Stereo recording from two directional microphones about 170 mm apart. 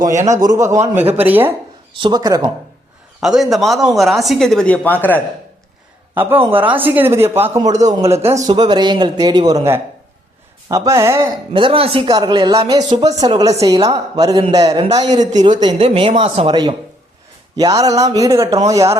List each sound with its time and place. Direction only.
0.3 s speech: 20° right (ahead or behind)
2.0 s speech: 25° right (ahead or behind)
3.2 s a woman's voice: centre (ahead or behind)
6.1 s speech: 10° right (ahead or behind)
7.7 s a man's voice: 45° right (ahead or behind)
7.9 s speech: 15° right (ahead or behind)
11.5 s speech: 30° right (ahead or behind)
15.6 s speech: 35° right (ahead or behind); by 18.9 s 20° right (ahead or behind)